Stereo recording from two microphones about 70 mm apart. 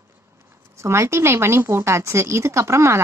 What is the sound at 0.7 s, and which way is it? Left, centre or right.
A woman's voice, right.